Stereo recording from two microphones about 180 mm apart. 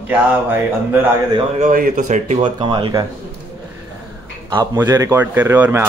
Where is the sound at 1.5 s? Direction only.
45° right (ahead or behind).